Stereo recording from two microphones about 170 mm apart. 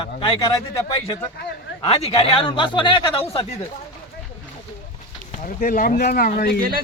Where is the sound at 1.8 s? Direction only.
35° left (ahead or behind).